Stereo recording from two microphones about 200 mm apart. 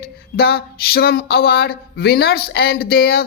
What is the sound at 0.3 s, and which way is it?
Speech, 50° left (ahead or behind).